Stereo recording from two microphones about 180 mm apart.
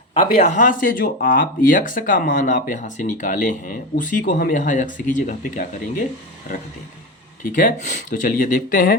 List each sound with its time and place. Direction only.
0.1 s speech: 40° left (ahead or behind)
7.4 s speech: 50° left (ahead or behind)